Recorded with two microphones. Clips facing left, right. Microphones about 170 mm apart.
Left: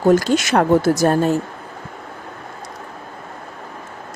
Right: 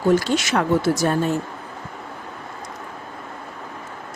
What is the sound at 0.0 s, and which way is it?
Speech, 45° left (ahead or behind).